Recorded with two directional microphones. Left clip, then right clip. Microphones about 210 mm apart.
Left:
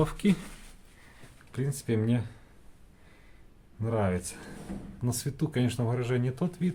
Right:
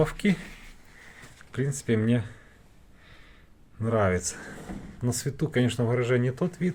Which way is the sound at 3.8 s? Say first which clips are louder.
Right 5 dB; 10° right (ahead or behind).